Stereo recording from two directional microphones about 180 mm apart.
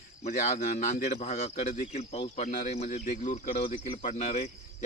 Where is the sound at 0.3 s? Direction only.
45° left (ahead or behind).